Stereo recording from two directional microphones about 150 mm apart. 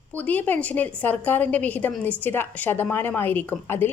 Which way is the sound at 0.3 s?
10° left (ahead or behind).